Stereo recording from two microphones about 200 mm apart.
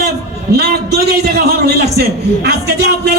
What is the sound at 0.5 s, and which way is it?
A man's voice, 55° right (ahead or behind).